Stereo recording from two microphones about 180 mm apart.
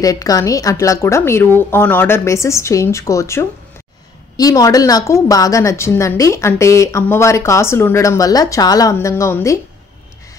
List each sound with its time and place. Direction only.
0.0 s a woman's voice: 20° left (ahead or behind)